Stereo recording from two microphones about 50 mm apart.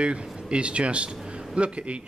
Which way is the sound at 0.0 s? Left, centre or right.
Right.